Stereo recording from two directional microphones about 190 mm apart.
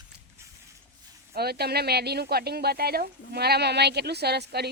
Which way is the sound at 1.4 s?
55° right (ahead or behind).